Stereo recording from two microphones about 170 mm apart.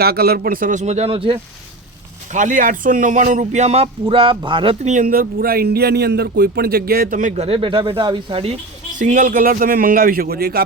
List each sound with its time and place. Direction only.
0.0 s speech: 70° right (ahead or behind); by 1.4 s 35° right (ahead or behind)
2.3 s speech: 50° right (ahead or behind); by 8.5 s 30° right (ahead or behind)
9.0 s a man's voice: 50° right (ahead or behind)